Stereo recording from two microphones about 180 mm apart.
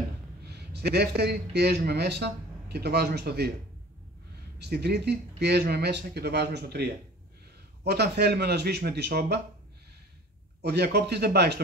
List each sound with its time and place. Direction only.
0.5 s a man's voice: 65° right (ahead or behind)
4.6 s speech: 65° right (ahead or behind)
10.6 s speech: 65° right (ahead or behind)